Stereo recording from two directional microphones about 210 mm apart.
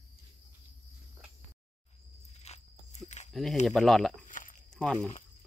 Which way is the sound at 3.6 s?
Centre (ahead or behind).